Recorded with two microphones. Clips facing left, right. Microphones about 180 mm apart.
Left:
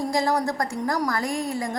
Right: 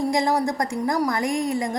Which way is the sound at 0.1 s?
15° right (ahead or behind).